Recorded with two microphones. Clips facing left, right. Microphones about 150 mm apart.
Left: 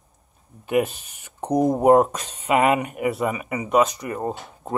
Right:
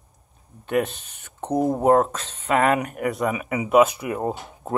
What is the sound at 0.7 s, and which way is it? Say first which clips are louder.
Speech: left 2 dB; 10° left (ahead or behind).